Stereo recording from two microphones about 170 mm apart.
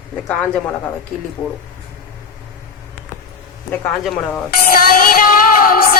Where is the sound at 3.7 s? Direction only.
5° left (ahead or behind).